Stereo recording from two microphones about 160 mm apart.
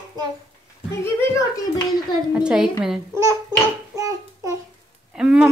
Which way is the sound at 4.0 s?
20° right (ahead or behind).